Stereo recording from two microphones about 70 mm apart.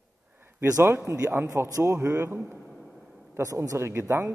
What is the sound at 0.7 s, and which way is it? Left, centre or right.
Speech, right.